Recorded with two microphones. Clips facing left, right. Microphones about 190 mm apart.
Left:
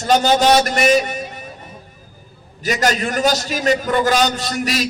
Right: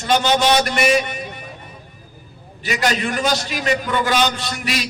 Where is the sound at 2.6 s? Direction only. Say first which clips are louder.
Left 2 dB; 40° left (ahead or behind).